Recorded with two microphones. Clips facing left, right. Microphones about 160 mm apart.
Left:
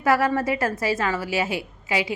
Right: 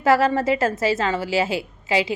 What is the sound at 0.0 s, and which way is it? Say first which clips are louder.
A woman's voice: right 3 dB; 25° right (ahead or behind).